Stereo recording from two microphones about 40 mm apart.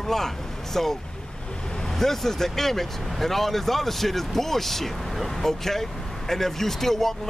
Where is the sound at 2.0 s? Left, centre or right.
Centre.